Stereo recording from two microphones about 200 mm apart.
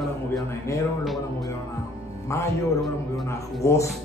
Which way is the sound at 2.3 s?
15° left (ahead or behind).